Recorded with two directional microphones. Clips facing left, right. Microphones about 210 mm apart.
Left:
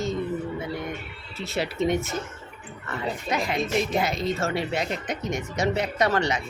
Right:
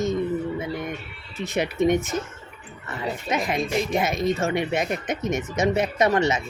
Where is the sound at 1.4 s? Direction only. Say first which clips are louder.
Right 4 dB; 15° right (ahead or behind).